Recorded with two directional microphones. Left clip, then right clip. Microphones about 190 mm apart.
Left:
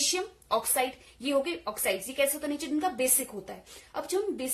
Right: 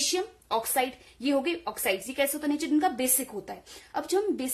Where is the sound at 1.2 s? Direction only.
35° right (ahead or behind).